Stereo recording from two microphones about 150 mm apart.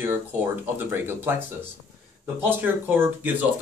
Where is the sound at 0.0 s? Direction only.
15° right (ahead or behind).